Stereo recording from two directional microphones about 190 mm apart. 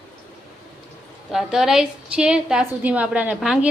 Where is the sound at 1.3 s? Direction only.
Centre (ahead or behind).